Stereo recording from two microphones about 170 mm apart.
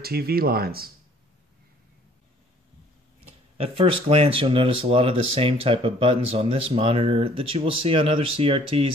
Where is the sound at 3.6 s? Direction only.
35° right (ahead or behind).